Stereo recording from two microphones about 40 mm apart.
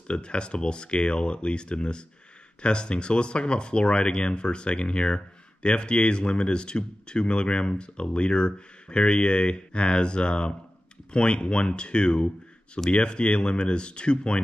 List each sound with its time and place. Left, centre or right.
0.1 s speech: left